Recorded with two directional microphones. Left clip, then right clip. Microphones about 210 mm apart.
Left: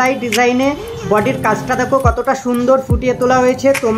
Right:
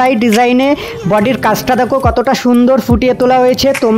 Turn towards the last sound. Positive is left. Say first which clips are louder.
# right 3 dB
turn(degrees=-45)  # may be behind; listen again after turning